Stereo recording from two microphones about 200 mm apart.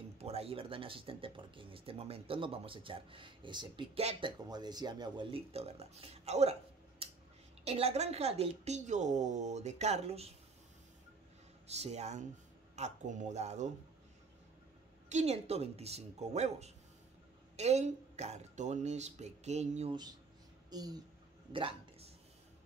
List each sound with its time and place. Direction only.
0.2 s speech: 30° right (ahead or behind)
4.5 s a woman's voice: 20° right (ahead or behind)
11.6 s a woman's voice: 35° right (ahead or behind)
15.0 s a woman's voice: 35° right (ahead or behind)
20.7 s speech: 20° right (ahead or behind)
21.5 s a sound: 25° right (ahead or behind)